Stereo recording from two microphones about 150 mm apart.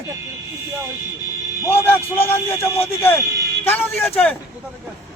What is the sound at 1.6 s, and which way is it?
A man's voice, 15° left (ahead or behind).